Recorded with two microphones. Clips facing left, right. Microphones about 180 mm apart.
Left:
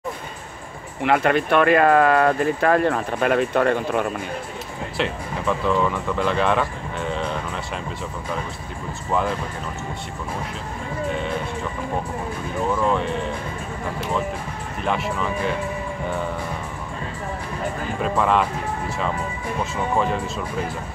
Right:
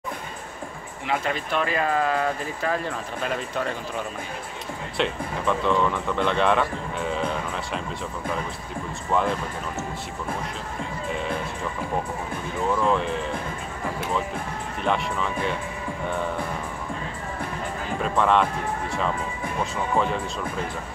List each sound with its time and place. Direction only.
1.0 s speech: 65° left (ahead or behind)
4.9 s speech: centre (ahead or behind)
12.9 s speech: centre (ahead or behind)
14.8 s speech: centre (ahead or behind)
18.0 s speech: 5° left (ahead or behind)
19.6 s speech: centre (ahead or behind)